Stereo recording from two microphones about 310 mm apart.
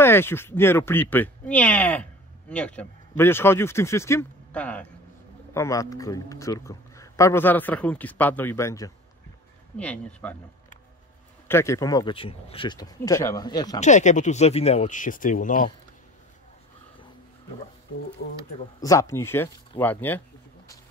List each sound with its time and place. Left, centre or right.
0.0 s a man's voice: centre
11.4 s speech: centre; by 15.7 s left
18.8 s a man's voice: centre